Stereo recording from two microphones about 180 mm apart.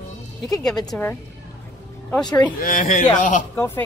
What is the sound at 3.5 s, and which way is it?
Speech, 15° left (ahead or behind).